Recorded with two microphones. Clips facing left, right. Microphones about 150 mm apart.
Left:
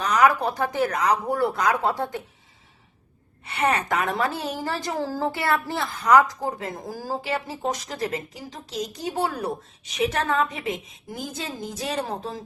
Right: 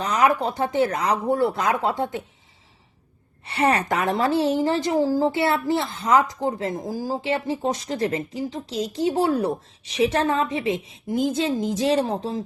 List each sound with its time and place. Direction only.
0.0 s a woman's voice: 25° right (ahead or behind)
3.4 s a woman's voice: 30° right (ahead or behind)